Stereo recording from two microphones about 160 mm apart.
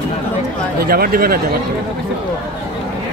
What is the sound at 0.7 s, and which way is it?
Speech, 70° right (ahead or behind).